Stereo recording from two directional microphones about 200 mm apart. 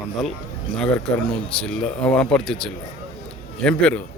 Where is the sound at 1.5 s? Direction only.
5° left (ahead or behind).